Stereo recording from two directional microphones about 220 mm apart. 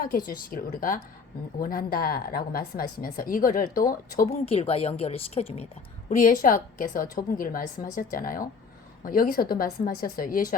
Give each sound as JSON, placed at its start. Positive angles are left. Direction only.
{"t": 0.3, "sound": "a woman's voice", "side_deg": 40}
{"t": 4.4, "sound": "a woman's voice", "side_deg": 25}